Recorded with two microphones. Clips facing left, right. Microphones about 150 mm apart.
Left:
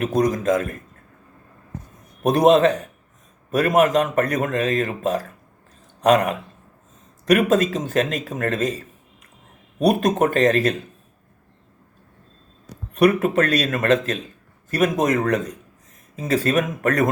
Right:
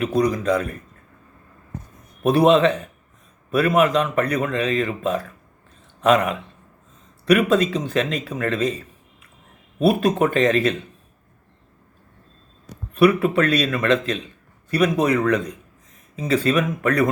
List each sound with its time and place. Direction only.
0.0 s speech: 45° left (ahead or behind)
2.2 s speech: 40° left (ahead or behind)
12.9 s speech: 45° left (ahead or behind)